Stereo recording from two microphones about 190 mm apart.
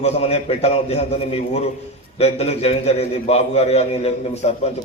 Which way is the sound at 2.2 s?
35° left (ahead or behind).